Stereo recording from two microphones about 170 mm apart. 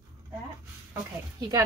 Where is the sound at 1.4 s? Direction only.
25° right (ahead or behind).